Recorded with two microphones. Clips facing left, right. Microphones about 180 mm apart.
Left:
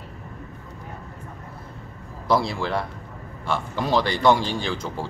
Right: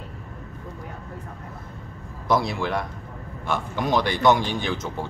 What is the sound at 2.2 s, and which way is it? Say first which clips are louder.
A man's voice: even; 20° right (ahead or behind).